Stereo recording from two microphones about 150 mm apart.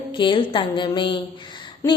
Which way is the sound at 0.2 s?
35° left (ahead or behind).